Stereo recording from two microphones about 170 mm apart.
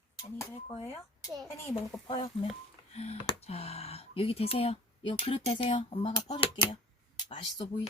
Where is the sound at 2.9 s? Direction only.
40° left (ahead or behind).